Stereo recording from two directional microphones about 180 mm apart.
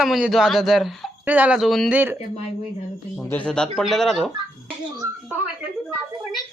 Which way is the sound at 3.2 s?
5° left (ahead or behind).